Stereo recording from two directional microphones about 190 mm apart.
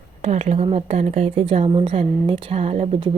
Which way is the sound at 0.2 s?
40° right (ahead or behind).